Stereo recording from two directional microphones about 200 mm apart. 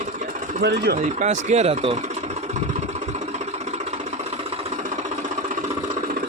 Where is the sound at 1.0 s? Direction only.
35° right (ahead or behind).